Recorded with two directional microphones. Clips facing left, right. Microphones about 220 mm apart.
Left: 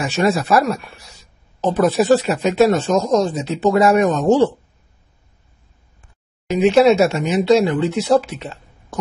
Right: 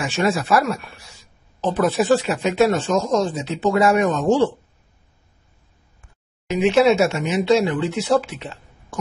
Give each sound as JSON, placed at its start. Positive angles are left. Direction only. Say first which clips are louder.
{"t": 0.0, "sound": "speech", "louder": "left 3 dB", "side_deg": 40}
{"t": 6.5, "sound": "speech", "louder": "left 3 dB", "side_deg": 35}